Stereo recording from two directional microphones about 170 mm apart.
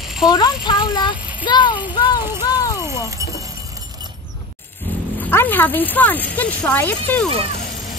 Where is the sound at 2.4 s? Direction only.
20° left (ahead or behind).